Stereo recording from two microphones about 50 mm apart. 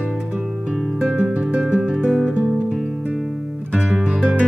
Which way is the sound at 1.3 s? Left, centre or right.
Right.